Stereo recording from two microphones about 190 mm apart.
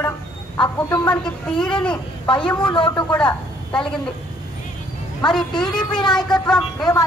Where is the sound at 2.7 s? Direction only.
25° left (ahead or behind).